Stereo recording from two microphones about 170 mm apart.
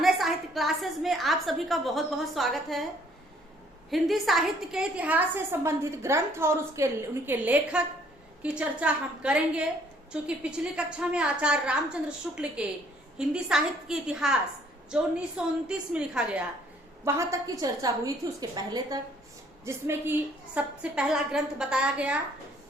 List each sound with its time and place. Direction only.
0.0 s a woman's voice: centre (ahead or behind)
3.8 s a woman's voice: centre (ahead or behind)
17.1 s a woman's voice: 15° right (ahead or behind)